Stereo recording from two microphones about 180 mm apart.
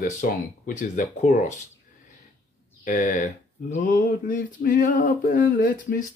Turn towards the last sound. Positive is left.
turn(degrees=50)  # may be behind; listen again after turning